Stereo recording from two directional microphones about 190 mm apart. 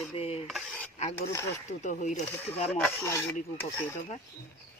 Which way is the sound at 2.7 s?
10° left (ahead or behind).